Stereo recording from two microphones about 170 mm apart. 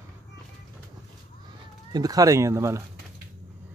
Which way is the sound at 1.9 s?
20° right (ahead or behind).